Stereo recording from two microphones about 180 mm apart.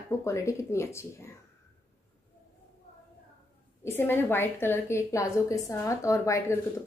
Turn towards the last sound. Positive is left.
turn(degrees=15)  # may be behind; listen again after turning